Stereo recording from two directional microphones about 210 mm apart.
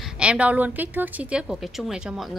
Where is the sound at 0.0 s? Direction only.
5° right (ahead or behind).